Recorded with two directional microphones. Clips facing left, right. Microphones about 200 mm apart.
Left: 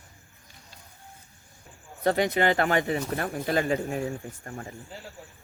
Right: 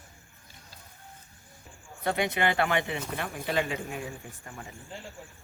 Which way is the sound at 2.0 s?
40° left (ahead or behind).